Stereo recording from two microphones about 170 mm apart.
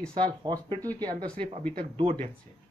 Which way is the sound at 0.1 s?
25° right (ahead or behind).